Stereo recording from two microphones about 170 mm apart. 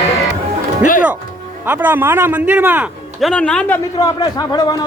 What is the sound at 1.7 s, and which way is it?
A man's voice, 10° right (ahead or behind).